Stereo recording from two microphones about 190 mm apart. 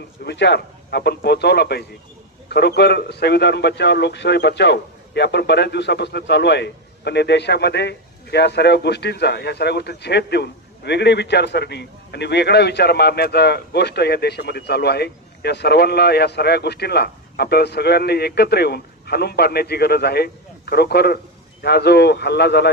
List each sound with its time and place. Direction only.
0.3 s a man's voice: 65° left (ahead or behind)